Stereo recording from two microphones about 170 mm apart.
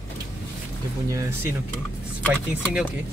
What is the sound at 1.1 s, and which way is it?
Speech, 15° right (ahead or behind).